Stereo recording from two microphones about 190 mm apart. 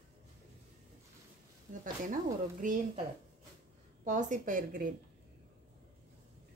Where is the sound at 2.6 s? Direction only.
45° right (ahead or behind).